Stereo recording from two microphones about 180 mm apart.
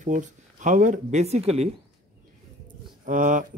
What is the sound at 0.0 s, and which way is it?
Speech, 45° right (ahead or behind).